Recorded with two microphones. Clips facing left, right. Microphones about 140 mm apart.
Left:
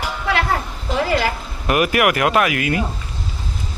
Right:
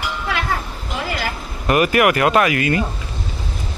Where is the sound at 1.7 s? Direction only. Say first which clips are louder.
Right 2 dB; 5° left (ahead or behind).